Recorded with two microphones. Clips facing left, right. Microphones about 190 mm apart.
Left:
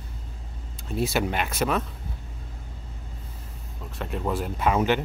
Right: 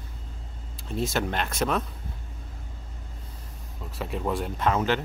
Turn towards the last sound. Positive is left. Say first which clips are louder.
# left 2 dB
turn(degrees=15)  # may be behind; listen again after turning